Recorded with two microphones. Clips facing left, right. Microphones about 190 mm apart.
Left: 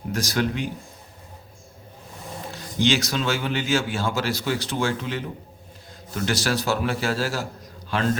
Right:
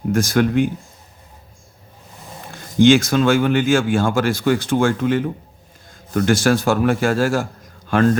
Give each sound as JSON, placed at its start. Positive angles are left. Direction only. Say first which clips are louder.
{"t": 0.1, "sound": "speech", "louder": "right 8 dB", "side_deg": -50}
{"t": 2.5, "sound": "a man's voice", "louder": "right 10 dB", "side_deg": -50}